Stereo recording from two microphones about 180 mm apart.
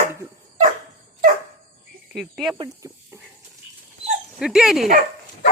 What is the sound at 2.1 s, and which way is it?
Speech, centre (ahead or behind).